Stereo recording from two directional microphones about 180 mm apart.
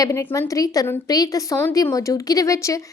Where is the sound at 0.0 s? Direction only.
15° left (ahead or behind).